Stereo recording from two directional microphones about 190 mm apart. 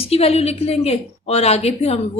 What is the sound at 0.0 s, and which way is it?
A woman's voice, 30° left (ahead or behind).